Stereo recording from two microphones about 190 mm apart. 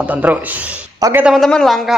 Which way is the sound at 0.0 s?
10° right (ahead or behind).